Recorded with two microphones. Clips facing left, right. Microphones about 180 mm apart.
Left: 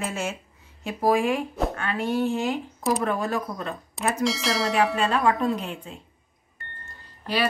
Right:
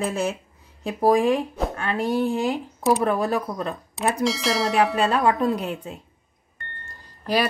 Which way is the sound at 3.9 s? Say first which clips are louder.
Right 2 dB; centre (ahead or behind).